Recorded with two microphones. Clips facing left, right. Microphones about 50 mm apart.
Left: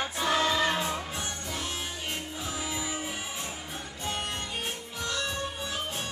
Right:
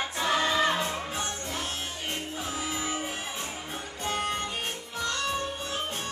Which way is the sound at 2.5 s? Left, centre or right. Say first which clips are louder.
Right 2 dB; right.